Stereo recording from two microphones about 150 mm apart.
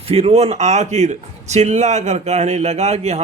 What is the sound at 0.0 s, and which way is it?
A man's voice, 40° right (ahead or behind).